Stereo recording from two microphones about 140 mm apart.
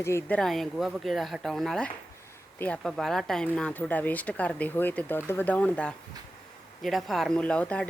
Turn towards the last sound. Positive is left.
turn(degrees=10)  # may be behind; listen again after turning